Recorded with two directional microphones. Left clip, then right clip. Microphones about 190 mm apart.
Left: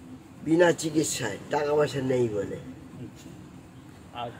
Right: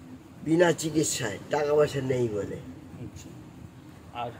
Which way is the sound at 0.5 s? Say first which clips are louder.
Left 1 dB; centre (ahead or behind).